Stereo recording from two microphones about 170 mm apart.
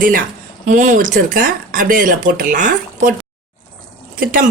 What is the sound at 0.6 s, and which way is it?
Speech, 50° right (ahead or behind).